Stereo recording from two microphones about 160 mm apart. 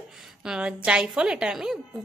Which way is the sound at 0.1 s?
5° right (ahead or behind).